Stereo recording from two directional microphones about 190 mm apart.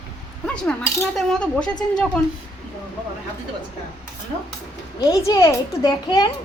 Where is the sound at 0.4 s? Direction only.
5° left (ahead or behind).